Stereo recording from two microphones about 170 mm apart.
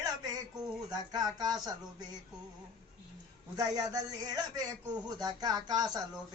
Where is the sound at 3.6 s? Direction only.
20° right (ahead or behind).